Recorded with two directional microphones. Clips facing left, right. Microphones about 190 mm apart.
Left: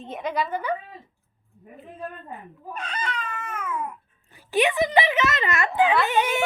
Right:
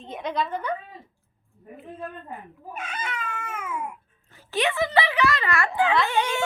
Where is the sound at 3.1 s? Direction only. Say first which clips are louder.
Left 1 dB; 10° right (ahead or behind).